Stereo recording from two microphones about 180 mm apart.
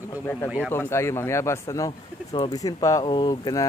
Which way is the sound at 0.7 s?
15° left (ahead or behind).